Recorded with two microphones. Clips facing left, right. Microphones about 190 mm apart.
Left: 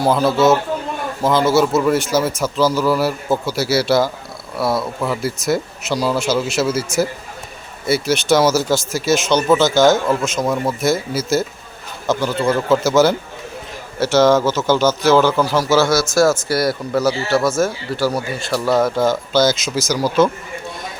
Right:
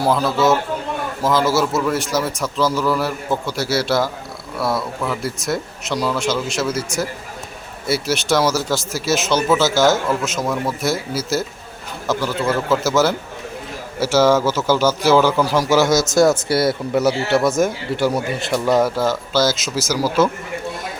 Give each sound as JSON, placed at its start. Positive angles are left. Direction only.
{"t": 0.0, "sound": "a man's voice", "side_deg": 0}